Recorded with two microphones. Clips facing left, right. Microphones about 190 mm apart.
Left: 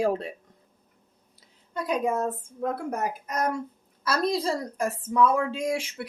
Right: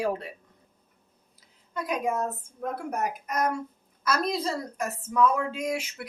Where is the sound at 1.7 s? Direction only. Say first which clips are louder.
Left 2 dB; 30° left (ahead or behind).